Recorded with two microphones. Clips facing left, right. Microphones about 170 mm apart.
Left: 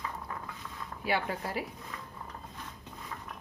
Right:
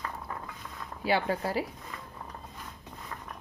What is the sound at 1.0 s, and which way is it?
Speech, 30° right (ahead or behind).